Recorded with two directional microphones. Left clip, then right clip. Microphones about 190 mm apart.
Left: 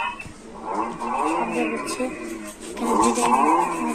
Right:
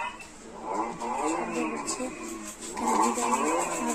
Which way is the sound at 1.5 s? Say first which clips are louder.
Left 6 dB; 10° right (ahead or behind).